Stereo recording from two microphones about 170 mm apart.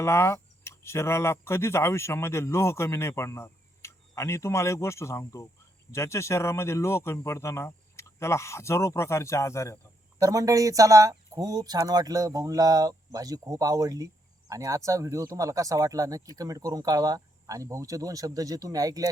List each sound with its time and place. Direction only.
0.0 s speech: 15° left (ahead or behind)
10.2 s speech: 20° right (ahead or behind)